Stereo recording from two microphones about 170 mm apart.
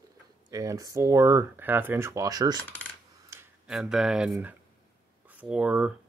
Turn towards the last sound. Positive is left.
turn(degrees=-5)  # may be behind; listen again after turning